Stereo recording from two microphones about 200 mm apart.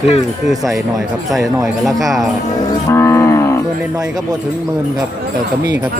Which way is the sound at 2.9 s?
15° left (ahead or behind).